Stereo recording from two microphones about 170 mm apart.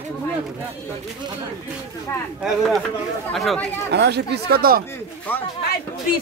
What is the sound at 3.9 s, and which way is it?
Speech, 75° right (ahead or behind).